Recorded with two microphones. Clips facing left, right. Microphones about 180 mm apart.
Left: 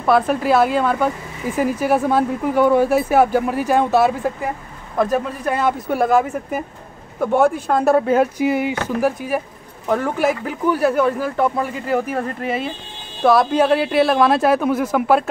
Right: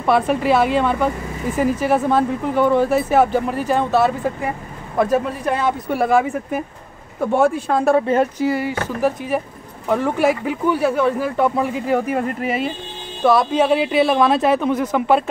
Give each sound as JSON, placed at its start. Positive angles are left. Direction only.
{"t": 0.0, "sound": "speech", "side_deg": 0}
{"t": 4.9, "sound": "speech", "side_deg": -5}
{"t": 8.5, "sound": "speech", "side_deg": 20}
{"t": 9.0, "sound": "speech", "side_deg": 5}